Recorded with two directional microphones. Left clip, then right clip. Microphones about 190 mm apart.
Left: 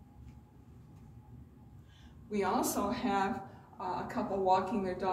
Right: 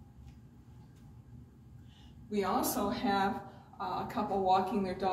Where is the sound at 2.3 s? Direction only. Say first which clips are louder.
Even; 55° left (ahead or behind).